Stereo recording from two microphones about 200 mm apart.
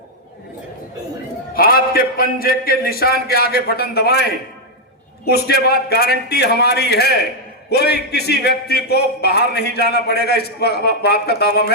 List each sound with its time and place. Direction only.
1.5 s a man's voice: 50° left (ahead or behind)